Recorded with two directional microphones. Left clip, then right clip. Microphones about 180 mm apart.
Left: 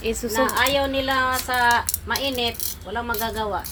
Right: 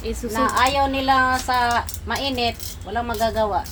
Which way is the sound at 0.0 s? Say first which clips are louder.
Left 3 dB; 15° left (ahead or behind).